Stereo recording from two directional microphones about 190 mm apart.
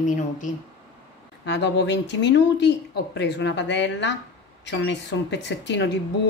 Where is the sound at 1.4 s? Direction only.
65° left (ahead or behind).